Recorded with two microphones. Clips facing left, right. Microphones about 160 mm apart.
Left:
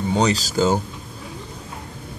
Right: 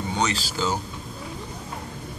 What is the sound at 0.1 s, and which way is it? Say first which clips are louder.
Speech: left 7 dB; 35° left (ahead or behind).